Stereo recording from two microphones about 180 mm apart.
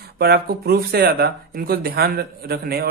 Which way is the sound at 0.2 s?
60° right (ahead or behind).